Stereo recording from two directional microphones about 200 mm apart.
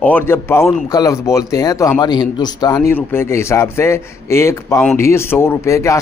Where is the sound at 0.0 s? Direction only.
10° left (ahead or behind).